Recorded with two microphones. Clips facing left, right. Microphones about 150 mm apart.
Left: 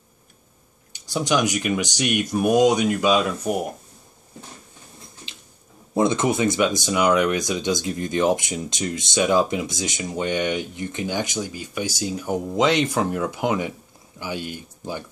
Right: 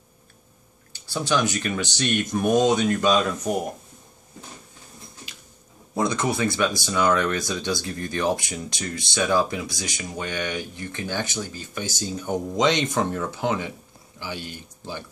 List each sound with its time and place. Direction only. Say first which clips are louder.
0.9 s speech: left 2 dB; 15° left (ahead or behind)
5.9 s speech: left 4 dB; 20° left (ahead or behind)